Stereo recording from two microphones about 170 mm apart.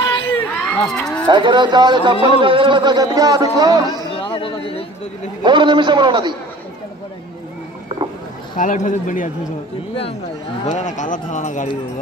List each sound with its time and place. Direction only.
0.3 s a sound: 5° left (ahead or behind)
1.2 s speech: 25° right (ahead or behind)
2.1 s speech: 30° left (ahead or behind)
2.4 s speech: 30° right (ahead or behind)
4.1 s a sound: 30° left (ahead or behind)
5.4 s speech: 30° right (ahead or behind)
8.5 s speech: 50° left (ahead or behind)
10.6 s speech: 45° left (ahead or behind)